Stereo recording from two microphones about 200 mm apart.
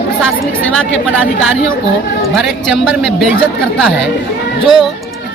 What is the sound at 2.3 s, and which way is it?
Speech, centre (ahead or behind).